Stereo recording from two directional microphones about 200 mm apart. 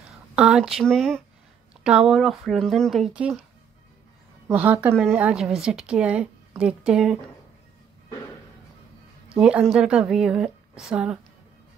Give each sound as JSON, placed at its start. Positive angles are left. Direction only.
{"t": 0.4, "sound": "speech", "side_deg": 0}
{"t": 4.5, "sound": "speech", "side_deg": -5}
{"t": 9.3, "sound": "speech", "side_deg": -5}